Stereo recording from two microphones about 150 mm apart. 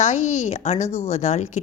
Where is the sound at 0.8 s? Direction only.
15° left (ahead or behind).